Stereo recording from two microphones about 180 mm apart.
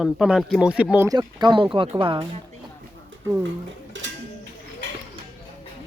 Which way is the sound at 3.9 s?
90° right.